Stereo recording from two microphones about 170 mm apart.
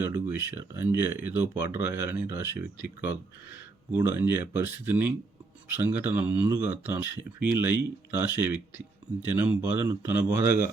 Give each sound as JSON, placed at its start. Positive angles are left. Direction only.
{"t": 0.0, "sound": "speech", "side_deg": -10}
{"t": 3.9, "sound": "speech", "side_deg": -15}